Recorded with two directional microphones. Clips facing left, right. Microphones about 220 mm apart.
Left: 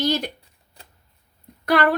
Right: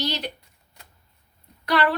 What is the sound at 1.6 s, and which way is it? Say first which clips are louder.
Speech: left 3 dB; 50° left (ahead or behind).